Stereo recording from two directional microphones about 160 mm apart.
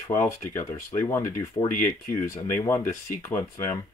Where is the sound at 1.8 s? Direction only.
55° left (ahead or behind).